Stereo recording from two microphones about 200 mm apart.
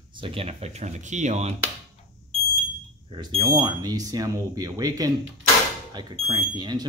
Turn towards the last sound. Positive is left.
turn(degrees=-20)  # may be behind; listen again after turning